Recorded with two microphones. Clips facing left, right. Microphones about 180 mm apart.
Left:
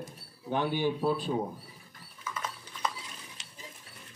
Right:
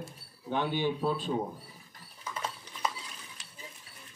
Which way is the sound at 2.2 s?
30° right (ahead or behind).